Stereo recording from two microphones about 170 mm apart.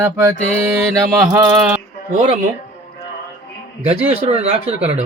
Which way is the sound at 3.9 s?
35° right (ahead or behind).